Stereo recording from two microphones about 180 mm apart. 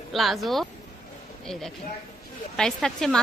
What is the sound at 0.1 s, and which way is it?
Speech, centre (ahead or behind).